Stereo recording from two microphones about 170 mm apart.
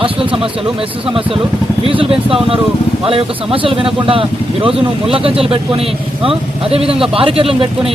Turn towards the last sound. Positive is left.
turn(degrees=-30)  # may be behind; listen again after turning